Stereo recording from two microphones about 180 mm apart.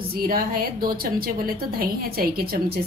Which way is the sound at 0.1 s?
55° right (ahead or behind).